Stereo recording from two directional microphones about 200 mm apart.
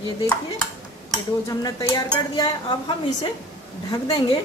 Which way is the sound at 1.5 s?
15° left (ahead or behind).